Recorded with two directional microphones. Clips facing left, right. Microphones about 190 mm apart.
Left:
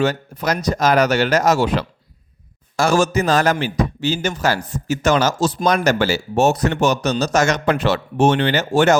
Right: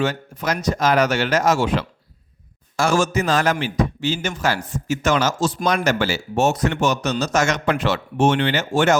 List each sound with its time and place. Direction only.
0.0 s speech: 40° left (ahead or behind)